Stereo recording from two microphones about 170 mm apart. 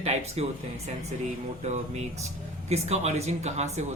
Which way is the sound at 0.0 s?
40° right (ahead or behind).